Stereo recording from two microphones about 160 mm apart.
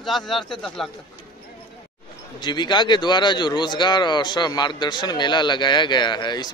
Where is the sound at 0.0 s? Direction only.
Centre (ahead or behind).